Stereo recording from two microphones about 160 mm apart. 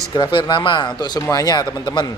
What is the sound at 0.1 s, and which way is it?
A man's voice, 30° left (ahead or behind).